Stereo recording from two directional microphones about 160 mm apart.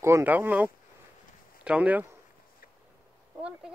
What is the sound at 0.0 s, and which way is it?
Speech, 15° right (ahead or behind).